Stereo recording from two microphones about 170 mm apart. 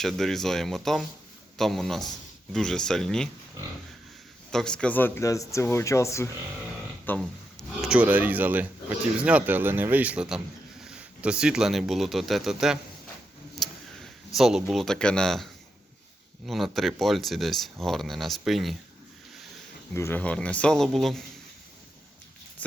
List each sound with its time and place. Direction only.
0.0 s speech: centre (ahead or behind)
4.5 s speech: 5° left (ahead or behind)
7.8 s speech: 5° right (ahead or behind)
14.3 s speech: centre (ahead or behind)
16.5 s speech: centre (ahead or behind)
19.9 s speech: 15° left (ahead or behind)